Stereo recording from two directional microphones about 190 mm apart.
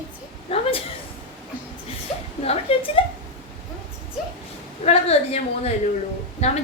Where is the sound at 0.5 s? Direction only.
30° left (ahead or behind).